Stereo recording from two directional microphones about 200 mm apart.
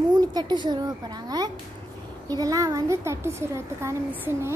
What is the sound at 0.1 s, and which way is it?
A woman's voice, 20° right (ahead or behind).